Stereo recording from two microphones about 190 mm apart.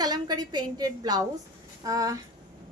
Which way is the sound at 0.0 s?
20° right (ahead or behind).